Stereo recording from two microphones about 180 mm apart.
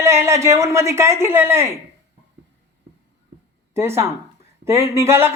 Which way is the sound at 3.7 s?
15° right (ahead or behind).